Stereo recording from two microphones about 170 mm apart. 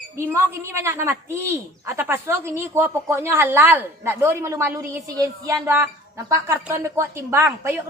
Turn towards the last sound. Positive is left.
turn(degrees=-15)  # may be behind; listen again after turning